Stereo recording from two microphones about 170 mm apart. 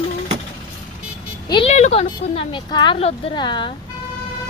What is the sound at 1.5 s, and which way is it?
Vehicle, 30° left (ahead or behind).